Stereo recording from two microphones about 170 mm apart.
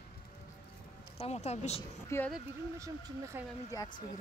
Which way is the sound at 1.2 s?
40° left (ahead or behind).